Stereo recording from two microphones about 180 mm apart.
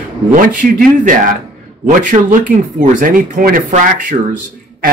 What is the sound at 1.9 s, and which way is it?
Speech, 45° right (ahead or behind).